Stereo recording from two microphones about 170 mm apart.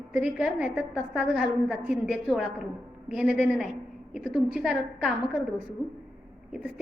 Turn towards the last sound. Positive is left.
turn(degrees=-5)  # may be behind; listen again after turning